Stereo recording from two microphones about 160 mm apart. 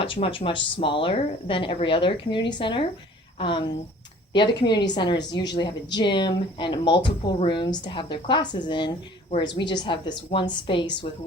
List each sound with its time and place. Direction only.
0.0 s speech: 35° left (ahead or behind)